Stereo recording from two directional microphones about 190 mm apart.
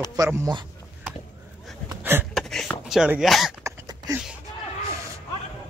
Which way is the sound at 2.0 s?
10° right (ahead or behind).